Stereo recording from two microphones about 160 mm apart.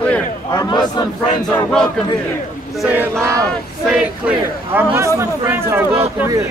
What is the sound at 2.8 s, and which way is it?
Speech, 10° right (ahead or behind).